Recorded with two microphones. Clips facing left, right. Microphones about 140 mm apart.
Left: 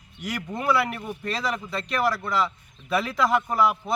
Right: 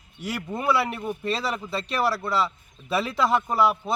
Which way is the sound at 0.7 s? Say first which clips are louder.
Even; 30° right (ahead or behind).